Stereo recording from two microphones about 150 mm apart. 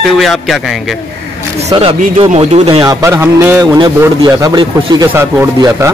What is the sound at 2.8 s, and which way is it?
Speech, 25° right (ahead or behind).